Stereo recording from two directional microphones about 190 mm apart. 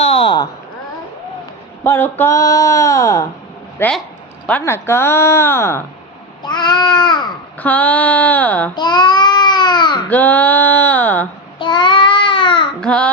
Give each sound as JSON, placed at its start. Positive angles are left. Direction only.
{"t": 0.0, "sound": "a sound", "side_deg": 30}
{"t": 1.8, "sound": "speech", "side_deg": 10}
{"t": 6.4, "sound": "babbling", "side_deg": 25}
{"t": 7.6, "sound": "speech", "side_deg": 10}
{"t": 8.7, "sound": "babbling", "side_deg": 25}
{"t": 10.1, "sound": "speech", "side_deg": 10}
{"t": 11.6, "sound": "babbling", "side_deg": 25}
{"t": 12.8, "sound": "child singing", "side_deg": 5}